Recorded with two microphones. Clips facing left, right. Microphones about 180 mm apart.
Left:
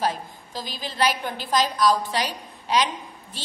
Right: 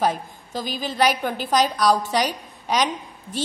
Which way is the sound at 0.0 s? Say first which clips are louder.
Right 4 dB; 50° right (ahead or behind).